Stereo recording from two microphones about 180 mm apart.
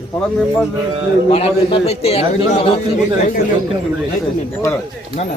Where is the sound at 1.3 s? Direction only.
35° left (ahead or behind).